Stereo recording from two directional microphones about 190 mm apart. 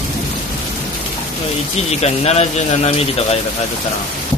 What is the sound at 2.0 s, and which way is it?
Speech, 35° left (ahead or behind).